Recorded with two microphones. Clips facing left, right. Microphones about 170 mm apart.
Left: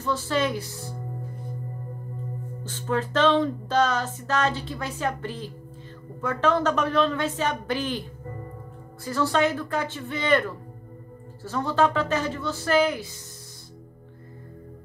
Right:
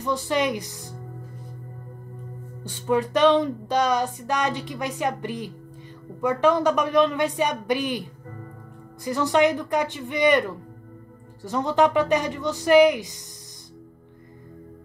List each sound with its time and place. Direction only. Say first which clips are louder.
0.0 s music: right 1 dB; 15° right (ahead or behind)
2.6 s music: right 4 dB; 15° right (ahead or behind)
9.0 s music: right 3 dB; 15° right (ahead or behind)
11.4 s music: right 3 dB; 15° right (ahead or behind)